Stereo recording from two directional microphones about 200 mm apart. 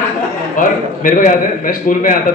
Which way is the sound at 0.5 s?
40° left (ahead or behind).